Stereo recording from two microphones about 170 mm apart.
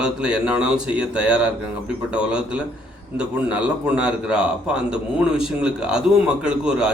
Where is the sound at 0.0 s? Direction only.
5° right (ahead or behind).